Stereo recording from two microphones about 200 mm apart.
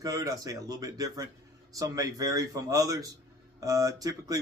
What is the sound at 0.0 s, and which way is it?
Speech, 15° right (ahead or behind).